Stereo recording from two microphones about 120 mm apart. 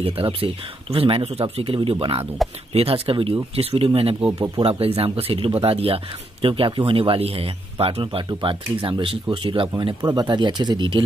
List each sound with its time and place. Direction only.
0.0 s speech: 50° right (ahead or behind)
4.3 s speech: 30° right (ahead or behind)
4.6 s speech: 55° right (ahead or behind); by 11.0 s 40° right (ahead or behind)